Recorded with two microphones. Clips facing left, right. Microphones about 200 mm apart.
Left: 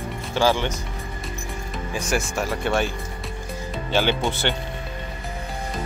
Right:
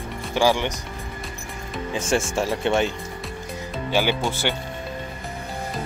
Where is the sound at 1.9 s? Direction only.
25° right (ahead or behind).